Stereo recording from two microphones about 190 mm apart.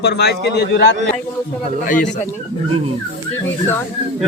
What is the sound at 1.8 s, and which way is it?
Speech, 40° left (ahead or behind).